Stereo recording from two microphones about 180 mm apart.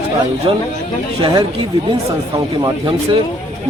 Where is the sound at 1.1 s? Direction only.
25° right (ahead or behind).